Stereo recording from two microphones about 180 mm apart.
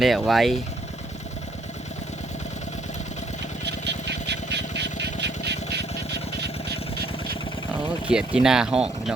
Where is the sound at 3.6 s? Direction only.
75° right (ahead or behind).